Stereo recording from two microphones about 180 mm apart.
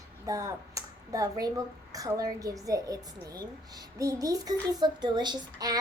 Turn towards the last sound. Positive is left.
turn(degrees=-20)  # may be behind; listen again after turning